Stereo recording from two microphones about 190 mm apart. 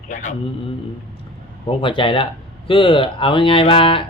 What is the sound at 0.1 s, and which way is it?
Speech, 40° left (ahead or behind).